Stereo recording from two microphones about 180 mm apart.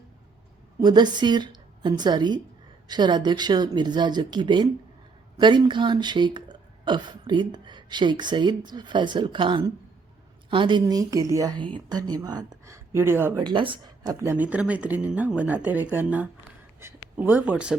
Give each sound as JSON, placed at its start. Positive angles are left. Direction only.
{"t": 0.8, "sound": "a woman's voice", "side_deg": -25}
{"t": 13.4, "sound": "speech", "side_deg": -25}